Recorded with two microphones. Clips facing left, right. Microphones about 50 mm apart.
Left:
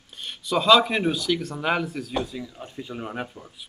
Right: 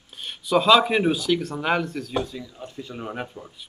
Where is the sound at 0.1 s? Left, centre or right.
Centre.